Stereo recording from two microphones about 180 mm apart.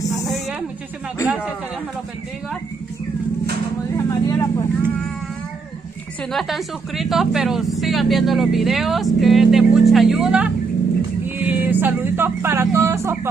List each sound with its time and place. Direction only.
0.3 s a sound: centre (ahead or behind)
1.2 s speech: 5° right (ahead or behind)
3.9 s vehicle: 15° left (ahead or behind)
6.3 s a woman's voice: centre (ahead or behind)